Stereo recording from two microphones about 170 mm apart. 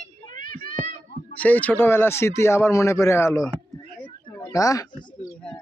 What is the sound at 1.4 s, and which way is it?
A man's voice, 10° left (ahead or behind).